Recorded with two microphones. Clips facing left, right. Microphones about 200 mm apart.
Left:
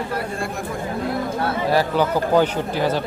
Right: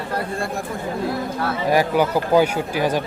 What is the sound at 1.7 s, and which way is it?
Speech, 10° right (ahead or behind).